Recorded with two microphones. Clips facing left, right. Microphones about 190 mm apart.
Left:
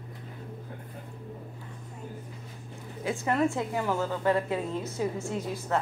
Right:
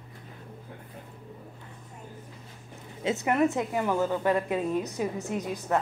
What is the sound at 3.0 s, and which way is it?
A woman's voice, 20° right (ahead or behind).